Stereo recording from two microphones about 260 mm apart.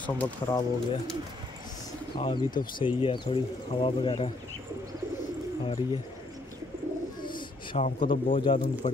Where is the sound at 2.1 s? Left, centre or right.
Centre.